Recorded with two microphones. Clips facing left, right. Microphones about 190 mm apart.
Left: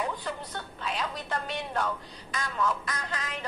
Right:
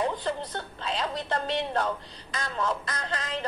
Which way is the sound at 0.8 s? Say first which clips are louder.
Right 3 dB; 30° right (ahead or behind).